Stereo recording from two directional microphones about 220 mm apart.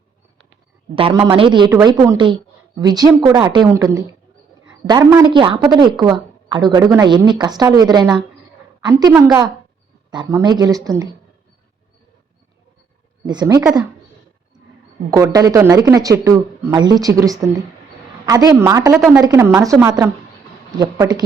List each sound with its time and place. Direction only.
0.9 s speech: 20° right (ahead or behind)
13.2 s speech: 20° right (ahead or behind)
15.1 s speech: 15° right (ahead or behind)
18.9 s a woman's voice: centre (ahead or behind)
19.2 s speech: 15° right (ahead or behind)